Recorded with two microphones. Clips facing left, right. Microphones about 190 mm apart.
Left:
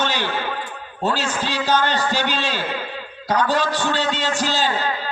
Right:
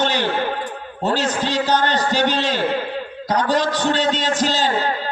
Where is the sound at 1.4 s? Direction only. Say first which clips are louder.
Left 1 dB; 15° right (ahead or behind).